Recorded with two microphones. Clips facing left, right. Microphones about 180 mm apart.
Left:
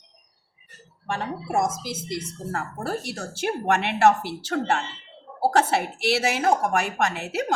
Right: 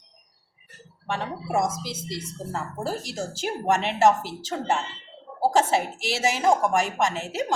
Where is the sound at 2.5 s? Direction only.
60° left (ahead or behind).